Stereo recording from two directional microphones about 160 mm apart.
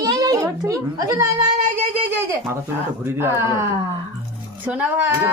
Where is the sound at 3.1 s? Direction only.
15° right (ahead or behind).